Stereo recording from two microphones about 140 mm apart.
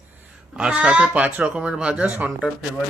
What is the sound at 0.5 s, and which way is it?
Speech, 5° right (ahead or behind).